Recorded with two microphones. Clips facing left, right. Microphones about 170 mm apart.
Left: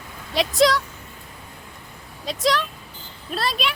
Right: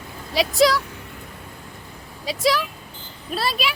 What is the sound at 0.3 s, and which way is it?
Speech, centre (ahead or behind).